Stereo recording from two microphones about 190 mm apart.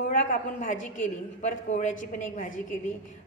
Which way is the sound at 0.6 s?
45° left (ahead or behind).